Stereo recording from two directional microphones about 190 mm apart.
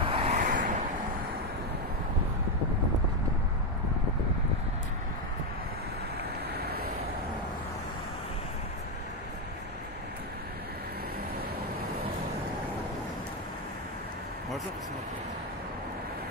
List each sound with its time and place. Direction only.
0.0 s vehicle: 30° right (ahead or behind)
0.4 s vehicle: 45° right (ahead or behind)
6.6 s vehicle: 55° right (ahead or behind)